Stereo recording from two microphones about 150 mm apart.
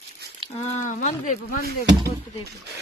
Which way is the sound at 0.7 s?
55° left (ahead or behind).